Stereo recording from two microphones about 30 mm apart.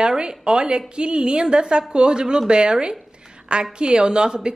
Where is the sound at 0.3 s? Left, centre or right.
Right.